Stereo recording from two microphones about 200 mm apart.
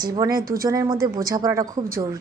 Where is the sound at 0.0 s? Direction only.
20° right (ahead or behind).